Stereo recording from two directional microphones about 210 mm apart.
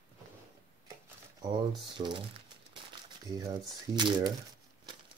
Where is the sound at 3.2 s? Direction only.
15° right (ahead or behind).